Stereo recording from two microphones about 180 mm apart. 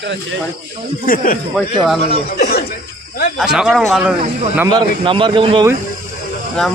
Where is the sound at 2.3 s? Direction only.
65° left (ahead or behind).